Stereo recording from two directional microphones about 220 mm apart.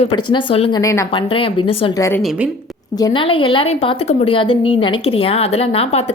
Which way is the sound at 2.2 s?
5° right (ahead or behind).